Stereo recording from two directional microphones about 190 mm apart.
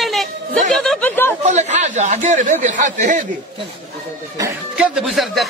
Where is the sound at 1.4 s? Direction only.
35° right (ahead or behind).